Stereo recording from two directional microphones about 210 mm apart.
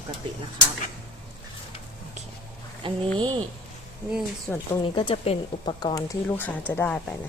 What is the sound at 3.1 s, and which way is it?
Speech, 25° right (ahead or behind).